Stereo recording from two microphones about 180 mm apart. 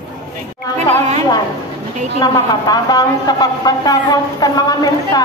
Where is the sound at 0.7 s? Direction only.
40° right (ahead or behind).